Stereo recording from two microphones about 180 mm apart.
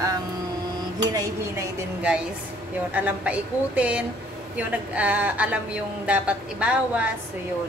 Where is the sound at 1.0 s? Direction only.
20° right (ahead or behind).